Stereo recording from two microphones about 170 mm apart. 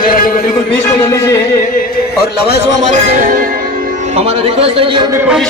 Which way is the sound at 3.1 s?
55° right (ahead or behind).